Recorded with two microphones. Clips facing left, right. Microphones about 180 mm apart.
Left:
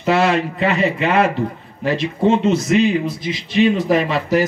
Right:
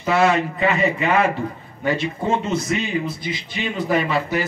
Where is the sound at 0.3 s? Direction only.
75° left (ahead or behind).